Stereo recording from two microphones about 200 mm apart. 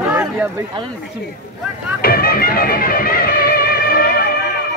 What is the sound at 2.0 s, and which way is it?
Music, 50° left (ahead or behind).